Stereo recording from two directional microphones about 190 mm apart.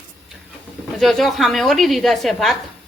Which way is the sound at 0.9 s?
Centre (ahead or behind).